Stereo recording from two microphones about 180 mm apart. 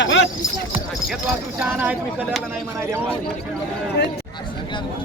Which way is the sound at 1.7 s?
10° right (ahead or behind).